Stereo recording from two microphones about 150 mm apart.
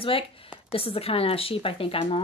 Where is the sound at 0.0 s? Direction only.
35° left (ahead or behind).